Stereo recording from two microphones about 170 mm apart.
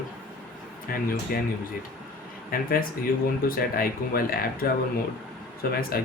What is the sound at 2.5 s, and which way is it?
Speech, 55° left (ahead or behind).